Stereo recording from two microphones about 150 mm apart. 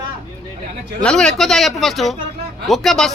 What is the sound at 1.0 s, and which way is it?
A man's voice, 5° left (ahead or behind).